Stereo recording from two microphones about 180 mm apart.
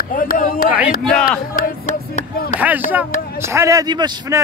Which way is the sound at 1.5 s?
50° left (ahead or behind).